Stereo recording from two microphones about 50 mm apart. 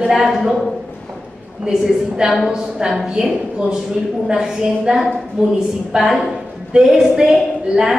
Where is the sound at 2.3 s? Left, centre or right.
Centre.